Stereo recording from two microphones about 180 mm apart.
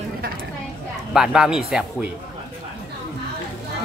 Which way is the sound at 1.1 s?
5° right (ahead or behind).